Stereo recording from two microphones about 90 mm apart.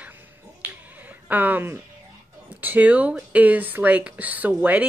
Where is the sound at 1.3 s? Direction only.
20° right (ahead or behind).